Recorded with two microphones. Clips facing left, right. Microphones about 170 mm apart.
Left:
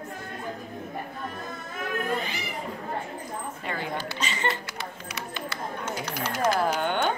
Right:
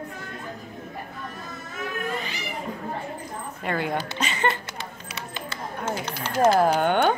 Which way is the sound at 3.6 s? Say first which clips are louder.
Right 7 dB; 55° right (ahead or behind).